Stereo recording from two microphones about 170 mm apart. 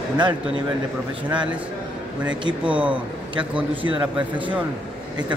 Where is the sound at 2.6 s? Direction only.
10° right (ahead or behind).